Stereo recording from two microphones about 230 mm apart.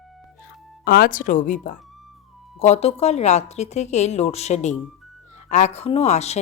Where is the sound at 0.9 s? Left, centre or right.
Left.